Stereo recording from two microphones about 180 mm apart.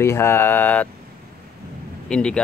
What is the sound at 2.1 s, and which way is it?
Speech, 5° left (ahead or behind).